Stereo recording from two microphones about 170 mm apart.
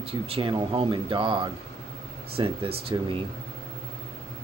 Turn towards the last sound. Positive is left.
turn(degrees=-25)  # may be behind; listen again after turning